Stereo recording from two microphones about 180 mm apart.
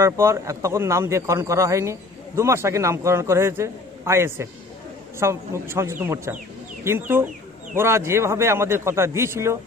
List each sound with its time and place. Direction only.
0.0 s a man's voice: 15° right (ahead or behind)